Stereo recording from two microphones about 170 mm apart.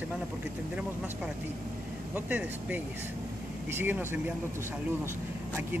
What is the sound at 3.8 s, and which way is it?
Speech, 10° right (ahead or behind).